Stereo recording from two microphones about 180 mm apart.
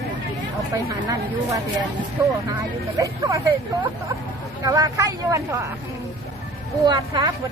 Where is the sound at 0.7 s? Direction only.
20° right (ahead or behind).